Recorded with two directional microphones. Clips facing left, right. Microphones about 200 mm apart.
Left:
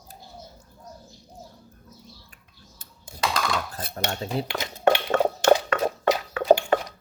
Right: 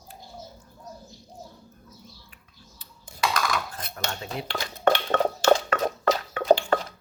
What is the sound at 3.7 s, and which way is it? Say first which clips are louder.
Cutlery: left 4 dB; 35° left (ahead or behind).